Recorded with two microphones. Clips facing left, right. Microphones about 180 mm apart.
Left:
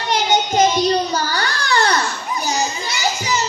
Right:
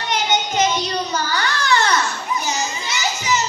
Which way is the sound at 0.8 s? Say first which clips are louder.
Left 5 dB; 35° left (ahead or behind).